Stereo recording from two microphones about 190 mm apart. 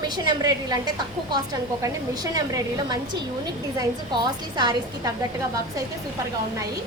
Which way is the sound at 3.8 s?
20° right (ahead or behind).